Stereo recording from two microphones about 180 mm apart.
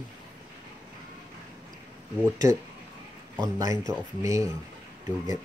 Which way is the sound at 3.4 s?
20° right (ahead or behind).